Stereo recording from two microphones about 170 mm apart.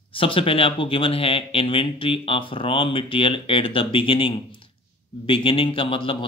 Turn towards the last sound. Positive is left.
turn(degrees=30)  # may be behind; listen again after turning